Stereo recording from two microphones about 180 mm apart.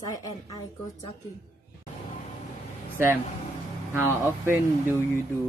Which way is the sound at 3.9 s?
10° right (ahead or behind).